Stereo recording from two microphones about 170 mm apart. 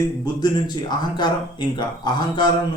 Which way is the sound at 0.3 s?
25° left (ahead or behind).